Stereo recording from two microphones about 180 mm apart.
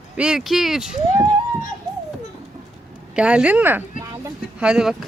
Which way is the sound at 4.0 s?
15° right (ahead or behind).